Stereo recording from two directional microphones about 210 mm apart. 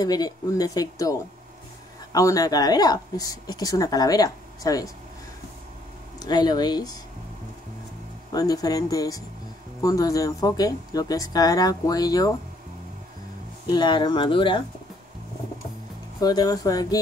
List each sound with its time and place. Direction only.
0.0 s a woman's voice: 20° left (ahead or behind)
2.1 s a woman's voice: 15° left (ahead or behind)
6.1 s speech: 20° left (ahead or behind)
8.3 s a woman's voice: 20° left (ahead or behind)
13.7 s speech: 20° left (ahead or behind)
16.2 s a woman's voice: 20° left (ahead or behind)